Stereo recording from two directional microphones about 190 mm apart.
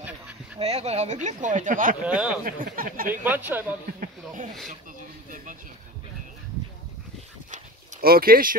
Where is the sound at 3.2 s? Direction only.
10° right (ahead or behind).